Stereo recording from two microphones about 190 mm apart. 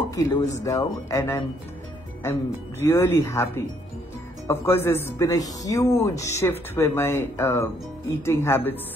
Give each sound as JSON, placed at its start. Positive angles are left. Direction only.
{"t": 0.1, "sound": "a man's voice", "side_deg": 15}
{"t": 2.8, "sound": "a man's voice", "side_deg": 15}